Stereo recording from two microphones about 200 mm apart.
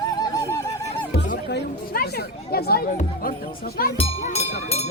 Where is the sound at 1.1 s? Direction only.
50° left (ahead or behind).